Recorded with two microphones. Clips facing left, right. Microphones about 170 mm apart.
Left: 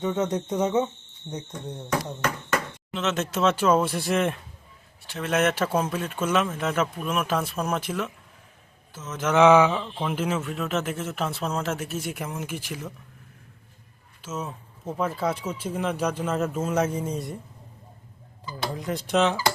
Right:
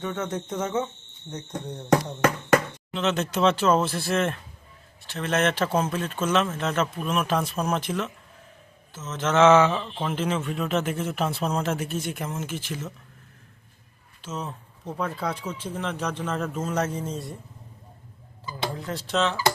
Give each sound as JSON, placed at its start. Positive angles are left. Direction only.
{"t": 0.0, "sound": "speech", "side_deg": 20}
{"t": 1.3, "sound": "cricket", "side_deg": 30}
{"t": 1.6, "sound": "speech", "side_deg": 0}
{"t": 14.2, "sound": "speech", "side_deg": 10}
{"t": 19.0, "sound": "speech", "side_deg": 15}